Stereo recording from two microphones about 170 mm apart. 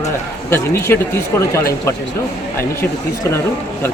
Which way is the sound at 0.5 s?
15° left (ahead or behind).